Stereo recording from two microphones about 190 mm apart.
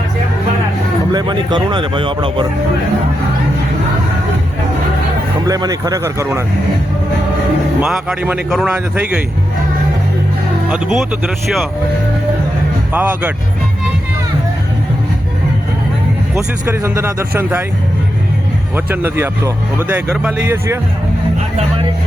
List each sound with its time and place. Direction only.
1.1 s speech: 20° right (ahead or behind)
5.5 s speech: 20° right (ahead or behind)
7.8 s a man's voice: 5° right (ahead or behind)
10.7 s a man's voice: centre (ahead or behind)
12.9 s speech: 10° right (ahead or behind)
16.3 s speech: 15° right (ahead or behind)
18.9 s speech: 10° right (ahead or behind)